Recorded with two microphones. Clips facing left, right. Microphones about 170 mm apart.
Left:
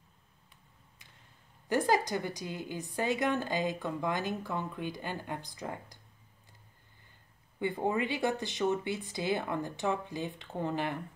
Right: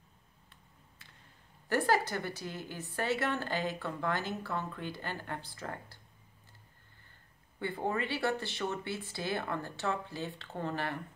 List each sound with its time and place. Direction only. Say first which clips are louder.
1.7 s a woman's voice: left 1 dB; 15° left (ahead or behind)
7.5 s a woman's voice: left 3 dB; 15° left (ahead or behind)